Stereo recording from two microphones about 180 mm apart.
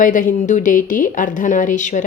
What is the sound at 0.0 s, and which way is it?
Speech, 50° left (ahead or behind).